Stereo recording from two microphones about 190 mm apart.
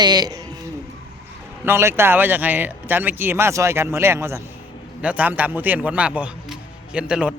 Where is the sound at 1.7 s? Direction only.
15° right (ahead or behind).